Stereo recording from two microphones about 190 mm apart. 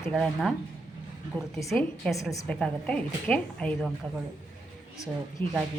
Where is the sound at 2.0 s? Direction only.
5° left (ahead or behind).